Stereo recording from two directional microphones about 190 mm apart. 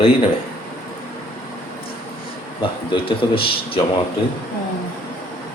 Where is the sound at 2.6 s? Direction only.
25° left (ahead or behind).